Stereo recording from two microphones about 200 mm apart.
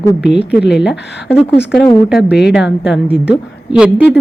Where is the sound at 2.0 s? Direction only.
5° right (ahead or behind).